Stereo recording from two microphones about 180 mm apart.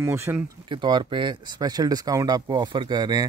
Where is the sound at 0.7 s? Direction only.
25° right (ahead or behind).